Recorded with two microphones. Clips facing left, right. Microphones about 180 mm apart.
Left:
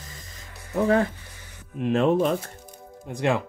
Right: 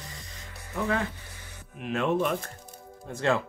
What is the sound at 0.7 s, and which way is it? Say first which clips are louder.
Speech: left 8 dB; 35° left (ahead or behind).